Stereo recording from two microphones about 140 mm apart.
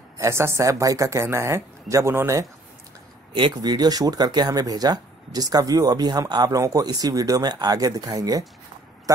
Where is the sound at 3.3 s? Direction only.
35° right (ahead or behind).